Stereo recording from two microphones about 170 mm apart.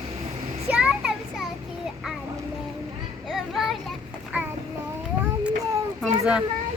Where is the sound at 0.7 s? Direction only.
5° right (ahead or behind).